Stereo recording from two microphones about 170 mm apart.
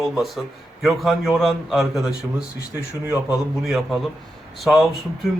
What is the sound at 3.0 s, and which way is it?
Speech, 15° right (ahead or behind).